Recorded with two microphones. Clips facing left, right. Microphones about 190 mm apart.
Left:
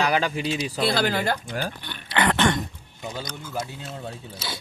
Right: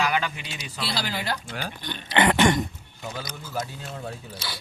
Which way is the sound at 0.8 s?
50° left (ahead or behind).